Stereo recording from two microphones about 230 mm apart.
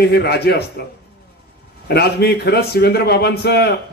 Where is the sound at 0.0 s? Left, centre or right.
Left.